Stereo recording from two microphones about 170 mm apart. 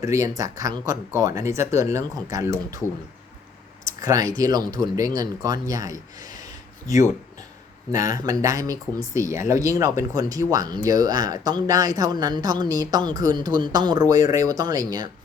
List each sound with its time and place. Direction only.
0.0 s speech: 20° right (ahead or behind)
3.8 s a sound: 20° right (ahead or behind)
4.4 s speech: 20° right (ahead or behind)
8.0 s speech: 20° right (ahead or behind)